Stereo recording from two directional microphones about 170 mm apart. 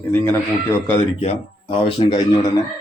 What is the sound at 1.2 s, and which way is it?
Speech, 35° left (ahead or behind).